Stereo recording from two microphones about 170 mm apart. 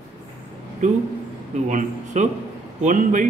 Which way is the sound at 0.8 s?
45° right (ahead or behind).